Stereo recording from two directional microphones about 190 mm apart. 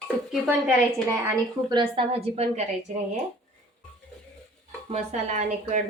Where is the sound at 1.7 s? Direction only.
25° right (ahead or behind).